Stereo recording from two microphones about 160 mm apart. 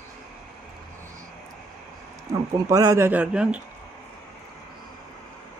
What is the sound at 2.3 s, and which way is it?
Speech, 20° right (ahead or behind).